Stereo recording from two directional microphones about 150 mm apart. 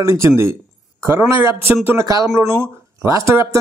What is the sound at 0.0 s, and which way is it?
A man's voice, 20° right (ahead or behind).